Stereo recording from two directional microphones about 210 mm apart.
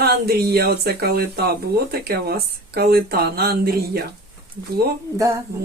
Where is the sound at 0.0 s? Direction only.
50° right (ahead or behind).